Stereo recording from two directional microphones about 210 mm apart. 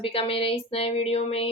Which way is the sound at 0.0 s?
25° left (ahead or behind).